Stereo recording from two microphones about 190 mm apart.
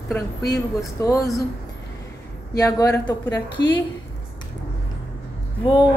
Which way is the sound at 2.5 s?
20° left (ahead or behind).